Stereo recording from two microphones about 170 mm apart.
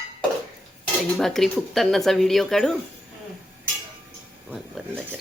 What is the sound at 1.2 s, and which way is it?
Speech, centre (ahead or behind).